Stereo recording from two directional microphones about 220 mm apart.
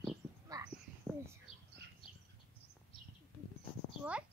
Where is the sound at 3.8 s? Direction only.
25° left (ahead or behind).